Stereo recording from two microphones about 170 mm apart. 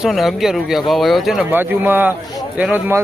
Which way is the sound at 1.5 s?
10° right (ahead or behind).